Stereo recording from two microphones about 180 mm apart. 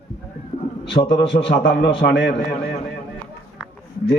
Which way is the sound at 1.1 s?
85° left.